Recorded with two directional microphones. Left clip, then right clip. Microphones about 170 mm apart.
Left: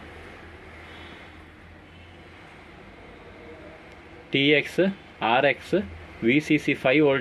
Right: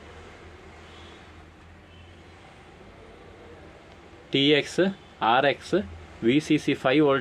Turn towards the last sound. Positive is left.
turn(degrees=-5)  # may be behind; listen again after turning